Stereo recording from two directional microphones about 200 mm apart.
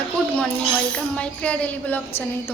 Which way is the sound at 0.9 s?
5° left (ahead or behind).